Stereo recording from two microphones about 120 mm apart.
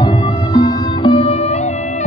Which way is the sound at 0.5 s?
40° left (ahead or behind).